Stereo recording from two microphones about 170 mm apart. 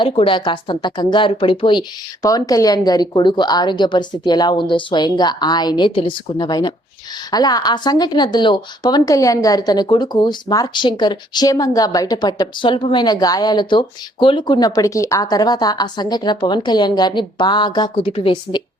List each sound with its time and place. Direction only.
0.0 s speech: 30° left (ahead or behind)